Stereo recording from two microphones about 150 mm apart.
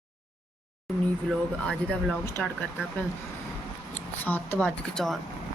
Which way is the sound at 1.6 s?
10° left (ahead or behind).